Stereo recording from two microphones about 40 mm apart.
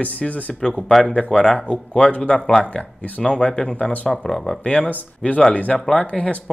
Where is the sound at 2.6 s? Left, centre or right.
Left.